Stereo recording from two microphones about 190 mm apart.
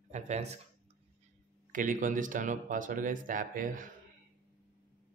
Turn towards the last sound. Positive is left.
turn(degrees=-45)  # may be behind; listen again after turning